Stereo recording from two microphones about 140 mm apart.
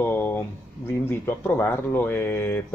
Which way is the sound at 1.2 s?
15° left (ahead or behind).